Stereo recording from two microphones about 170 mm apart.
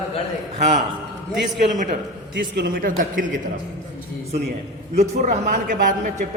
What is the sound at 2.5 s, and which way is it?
Speech, 80° right.